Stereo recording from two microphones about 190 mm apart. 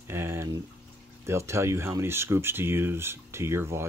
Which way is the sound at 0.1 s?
15° right (ahead or behind).